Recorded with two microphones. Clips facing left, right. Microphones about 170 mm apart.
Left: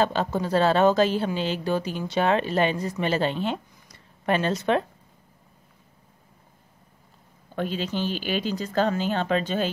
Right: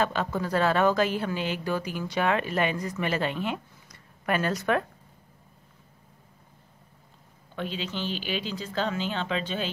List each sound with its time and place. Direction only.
0.0 s a woman's voice: 30° left (ahead or behind)
7.5 s speech: 45° left (ahead or behind)